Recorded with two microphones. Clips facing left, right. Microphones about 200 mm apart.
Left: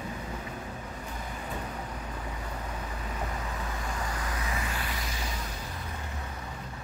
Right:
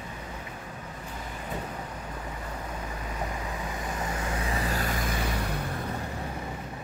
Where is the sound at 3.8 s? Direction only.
20° right (ahead or behind); by 5.6 s 65° right (ahead or behind).